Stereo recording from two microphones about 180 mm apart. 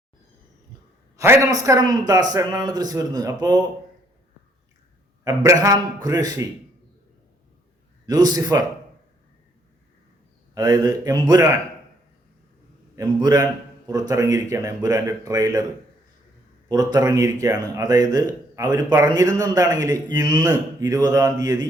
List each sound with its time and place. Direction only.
1.1 s a man's voice: 15° right (ahead or behind)
5.2 s a man's voice: 20° right (ahead or behind)
8.0 s a man's voice: 20° right (ahead or behind)
10.5 s a man's voice: 20° right (ahead or behind)
13.0 s a man's voice: 20° right (ahead or behind)
16.6 s a man's voice: 20° right (ahead or behind)